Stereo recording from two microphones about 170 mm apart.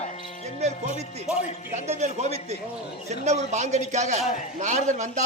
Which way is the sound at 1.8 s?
40° right (ahead or behind).